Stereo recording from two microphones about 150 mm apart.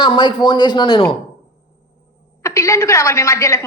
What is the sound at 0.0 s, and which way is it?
A woman's voice, 30° left (ahead or behind).